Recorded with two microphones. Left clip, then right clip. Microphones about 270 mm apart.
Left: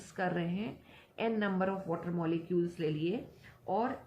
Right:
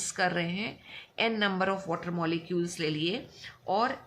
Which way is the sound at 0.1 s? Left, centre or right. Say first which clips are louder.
Right 5 dB; right.